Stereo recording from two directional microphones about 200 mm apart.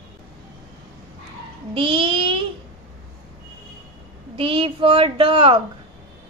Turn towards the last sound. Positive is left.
turn(degrees=-25)  # may be behind; listen again after turning